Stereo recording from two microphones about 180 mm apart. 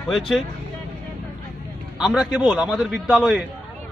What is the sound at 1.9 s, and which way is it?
A man's voice, 5° right (ahead or behind).